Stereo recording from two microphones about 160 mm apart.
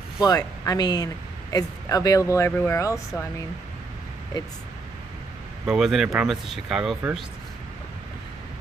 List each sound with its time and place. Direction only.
0.2 s speech: 25° left (ahead or behind)
5.7 s speech: centre (ahead or behind)